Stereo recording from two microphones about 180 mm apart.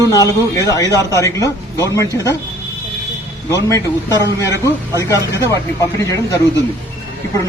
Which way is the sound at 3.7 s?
15° left (ahead or behind).